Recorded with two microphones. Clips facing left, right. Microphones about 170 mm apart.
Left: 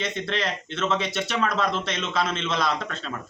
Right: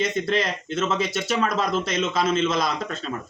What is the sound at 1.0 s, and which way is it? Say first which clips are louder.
Speech: right 2 dB; 40° right (ahead or behind).